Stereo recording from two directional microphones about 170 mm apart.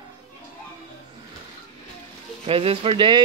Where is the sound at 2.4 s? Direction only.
35° right (ahead or behind).